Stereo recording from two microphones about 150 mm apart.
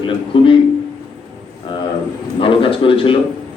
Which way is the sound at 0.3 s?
35° left (ahead or behind).